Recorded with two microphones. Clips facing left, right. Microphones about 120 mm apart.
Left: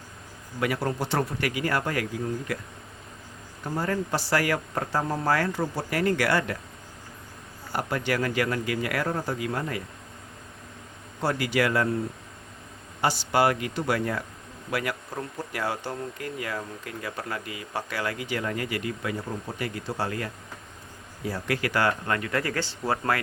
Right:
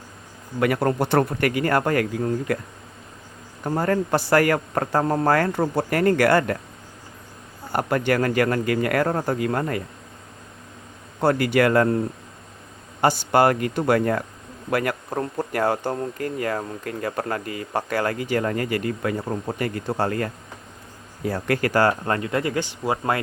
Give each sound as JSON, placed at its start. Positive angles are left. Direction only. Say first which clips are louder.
{"t": 0.6, "sound": "speech", "louder": "right 7 dB", "side_deg": -55}
{"t": 3.6, "sound": "speech", "louder": "right 6 dB", "side_deg": -50}
{"t": 7.7, "sound": "speech", "louder": "right 6 dB", "side_deg": -55}
{"t": 11.2, "sound": "speech", "louder": "right 6 dB", "side_deg": -55}
{"t": 13.0, "sound": "speech", "louder": "right 5 dB", "side_deg": -50}